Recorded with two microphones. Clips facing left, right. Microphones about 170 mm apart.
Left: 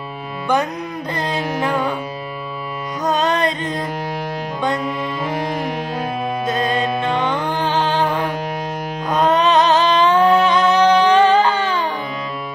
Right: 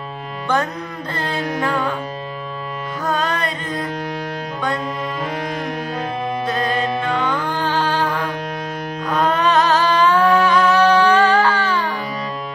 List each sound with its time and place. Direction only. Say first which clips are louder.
1.1 s music: even; 15° left (ahead or behind)
3.1 s carnatic music: left 4 dB; 20° left (ahead or behind)
5.3 s music: left 2 dB; 30° left (ahead or behind)